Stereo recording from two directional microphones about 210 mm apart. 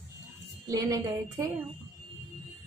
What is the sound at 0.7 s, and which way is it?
Speech, 15° right (ahead or behind).